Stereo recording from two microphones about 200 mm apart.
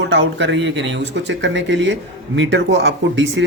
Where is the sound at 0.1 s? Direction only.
65° right (ahead or behind).